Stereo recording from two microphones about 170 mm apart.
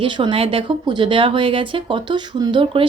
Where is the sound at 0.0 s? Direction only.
30° right (ahead or behind).